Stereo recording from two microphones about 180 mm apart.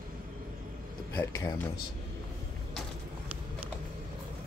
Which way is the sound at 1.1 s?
15° left (ahead or behind).